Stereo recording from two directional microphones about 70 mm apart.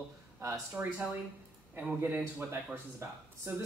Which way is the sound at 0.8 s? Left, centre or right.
Right.